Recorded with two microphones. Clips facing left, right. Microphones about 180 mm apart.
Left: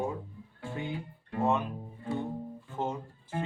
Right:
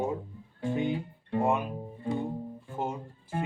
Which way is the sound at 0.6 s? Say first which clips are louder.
Right 8 dB; 20° right (ahead or behind).